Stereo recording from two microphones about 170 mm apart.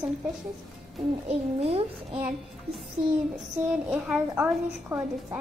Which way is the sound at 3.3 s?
5° right (ahead or behind).